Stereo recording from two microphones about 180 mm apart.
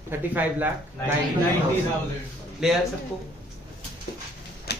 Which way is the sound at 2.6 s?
Centre (ahead or behind).